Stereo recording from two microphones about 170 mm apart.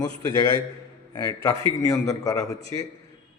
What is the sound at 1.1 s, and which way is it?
A man's voice, 20° left (ahead or behind).